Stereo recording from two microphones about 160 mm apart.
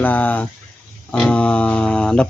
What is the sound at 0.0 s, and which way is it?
Speech, 10° left (ahead or behind).